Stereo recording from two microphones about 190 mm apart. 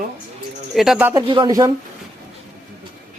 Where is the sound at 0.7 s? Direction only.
Centre (ahead or behind).